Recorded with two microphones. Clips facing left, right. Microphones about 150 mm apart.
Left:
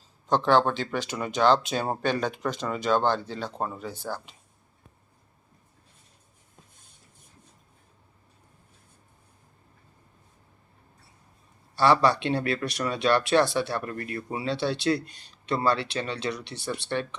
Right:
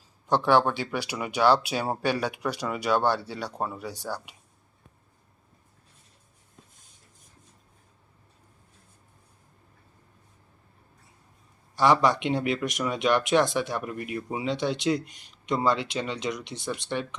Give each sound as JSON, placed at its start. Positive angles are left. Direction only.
{"t": 0.3, "sound": "speech", "side_deg": -10}
{"t": 11.8, "sound": "speech", "side_deg": -15}